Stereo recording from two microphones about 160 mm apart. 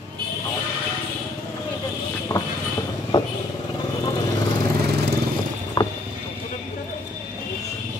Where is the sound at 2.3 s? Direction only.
25° left (ahead or behind).